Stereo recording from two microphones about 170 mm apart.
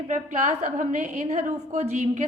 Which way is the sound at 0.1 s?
45° right (ahead or behind).